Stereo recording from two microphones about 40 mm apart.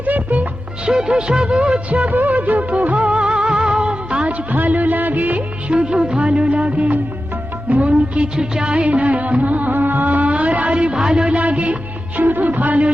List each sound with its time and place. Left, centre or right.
0.0 s music: right
0.9 s music: centre; by 2.1 s right
2.1 s music of bollywood: right
4.5 s music of bollywood: right
5.8 s music of bollywood: right
7.7 s music: right
8.4 s music of bollywood: right
10.7 s music: right